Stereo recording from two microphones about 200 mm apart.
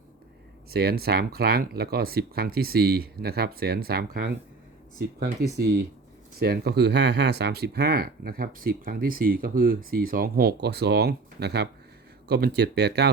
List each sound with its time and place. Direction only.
0.7 s speech: 50° right (ahead or behind)
6.4 s speech: 50° right (ahead or behind)